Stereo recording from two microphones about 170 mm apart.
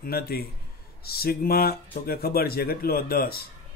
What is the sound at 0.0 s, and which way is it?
Speech, 65° left (ahead or behind).